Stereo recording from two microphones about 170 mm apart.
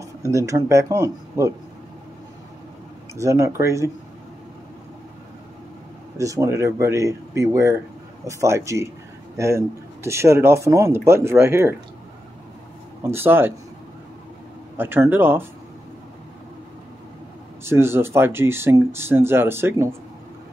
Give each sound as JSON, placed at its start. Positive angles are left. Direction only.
{"t": 0.0, "sound": "speech", "side_deg": -20}
{"t": 3.2, "sound": "speech", "side_deg": -15}
{"t": 6.1, "sound": "speech", "side_deg": -20}
{"t": 13.0, "sound": "speech", "side_deg": -15}
{"t": 14.8, "sound": "speech", "side_deg": -10}
{"t": 17.6, "sound": "speech", "side_deg": -15}